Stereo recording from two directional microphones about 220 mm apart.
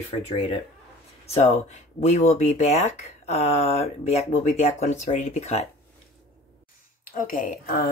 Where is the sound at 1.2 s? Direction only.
30° left (ahead or behind).